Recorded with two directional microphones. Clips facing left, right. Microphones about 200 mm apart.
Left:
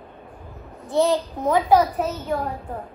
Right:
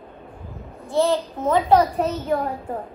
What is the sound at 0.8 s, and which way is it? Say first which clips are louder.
Speech: even; 15° left (ahead or behind).